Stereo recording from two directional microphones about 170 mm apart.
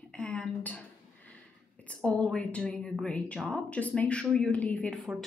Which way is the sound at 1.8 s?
5° left (ahead or behind).